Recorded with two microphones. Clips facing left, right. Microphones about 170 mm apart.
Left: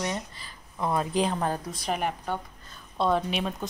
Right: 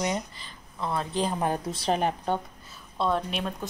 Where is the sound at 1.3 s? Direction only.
15° right (ahead or behind).